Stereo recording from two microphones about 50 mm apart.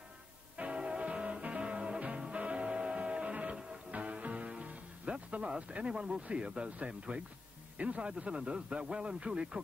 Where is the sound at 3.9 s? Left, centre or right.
Right.